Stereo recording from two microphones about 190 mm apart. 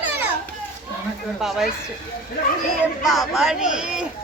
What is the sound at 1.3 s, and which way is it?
Speech, centre (ahead or behind).